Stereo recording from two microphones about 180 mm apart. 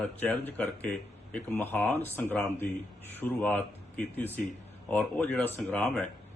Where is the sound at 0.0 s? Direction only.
10° left (ahead or behind).